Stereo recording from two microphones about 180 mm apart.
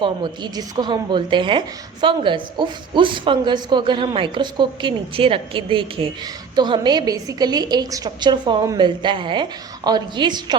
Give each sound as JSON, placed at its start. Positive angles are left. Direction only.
{"t": 0.0, "sound": "a woman's voice", "side_deg": -25}